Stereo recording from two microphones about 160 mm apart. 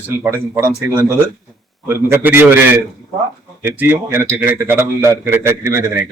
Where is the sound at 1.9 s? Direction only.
15° right (ahead or behind).